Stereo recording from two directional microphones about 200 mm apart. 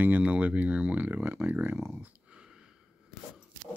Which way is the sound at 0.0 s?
10° right (ahead or behind).